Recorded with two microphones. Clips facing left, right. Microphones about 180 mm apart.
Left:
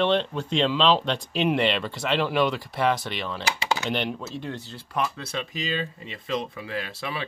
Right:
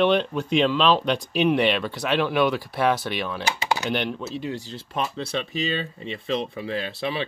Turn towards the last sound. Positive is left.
turn(degrees=-25)  # may be behind; listen again after turning